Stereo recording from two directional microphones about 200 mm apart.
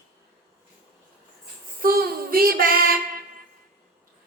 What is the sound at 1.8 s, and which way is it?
Child singing, 50° right (ahead or behind).